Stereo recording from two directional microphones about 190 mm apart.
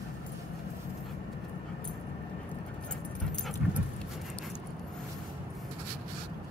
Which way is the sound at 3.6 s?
5° right (ahead or behind).